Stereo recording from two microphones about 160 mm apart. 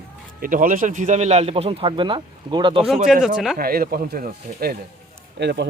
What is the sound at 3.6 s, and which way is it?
Speech, 70° right (ahead or behind).